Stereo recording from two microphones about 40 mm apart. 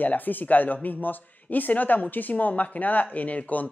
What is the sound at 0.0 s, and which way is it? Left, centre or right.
Speech, left.